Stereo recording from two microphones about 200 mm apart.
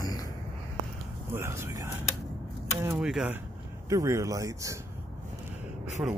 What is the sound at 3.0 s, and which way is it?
Speech, 5° right (ahead or behind).